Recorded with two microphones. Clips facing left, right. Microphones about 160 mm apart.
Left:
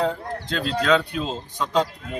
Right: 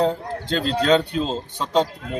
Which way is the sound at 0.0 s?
30° right (ahead or behind).